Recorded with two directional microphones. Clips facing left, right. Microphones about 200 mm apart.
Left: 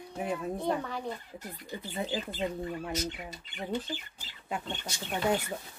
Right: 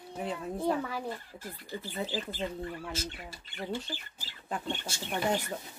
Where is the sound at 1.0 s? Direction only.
20° left (ahead or behind).